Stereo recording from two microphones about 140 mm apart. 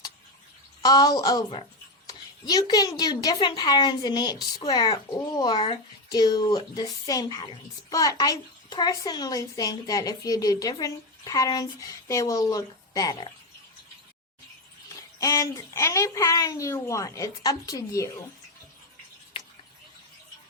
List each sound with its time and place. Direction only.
0.8 s a woman's voice: 30° left (ahead or behind)
2.0 s a sound: 30° left (ahead or behind)
3.0 s a woman's voice: 25° left (ahead or behind)
15.2 s a woman's voice: 25° left (ahead or behind)